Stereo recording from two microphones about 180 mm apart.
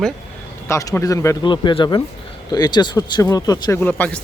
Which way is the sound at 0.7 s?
15° left (ahead or behind).